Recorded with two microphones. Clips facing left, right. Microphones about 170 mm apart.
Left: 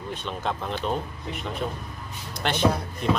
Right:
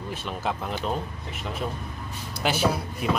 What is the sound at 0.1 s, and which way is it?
Speech, 5° right (ahead or behind).